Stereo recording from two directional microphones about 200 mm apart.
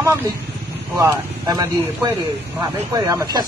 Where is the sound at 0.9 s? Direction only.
20° right (ahead or behind).